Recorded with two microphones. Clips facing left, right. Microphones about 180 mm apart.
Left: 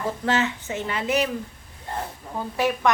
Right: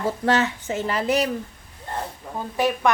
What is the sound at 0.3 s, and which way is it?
Speech, 40° right (ahead or behind).